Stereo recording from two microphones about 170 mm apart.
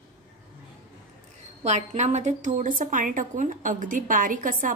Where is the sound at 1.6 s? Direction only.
40° right (ahead or behind).